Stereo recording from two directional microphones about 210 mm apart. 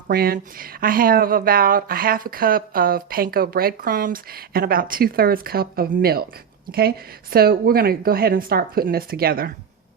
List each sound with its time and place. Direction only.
0.1 s a woman's voice: 45° right (ahead or behind)